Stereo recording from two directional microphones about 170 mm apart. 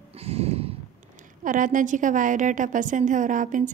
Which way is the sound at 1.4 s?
50° right (ahead or behind).